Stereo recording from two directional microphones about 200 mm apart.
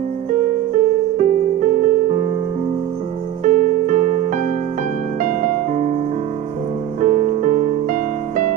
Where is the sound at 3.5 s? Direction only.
40° right (ahead or behind).